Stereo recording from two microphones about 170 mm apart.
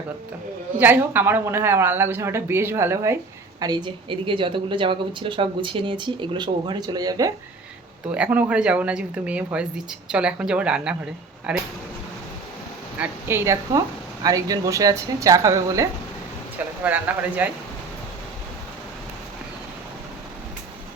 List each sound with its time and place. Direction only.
0.8 s speech: 10° right (ahead or behind)
8.1 s speech: 10° right (ahead or behind)
13.0 s speech: 15° right (ahead or behind)